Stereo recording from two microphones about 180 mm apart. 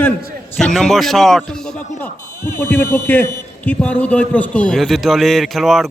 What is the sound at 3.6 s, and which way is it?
A man's voice, 10° left (ahead or behind).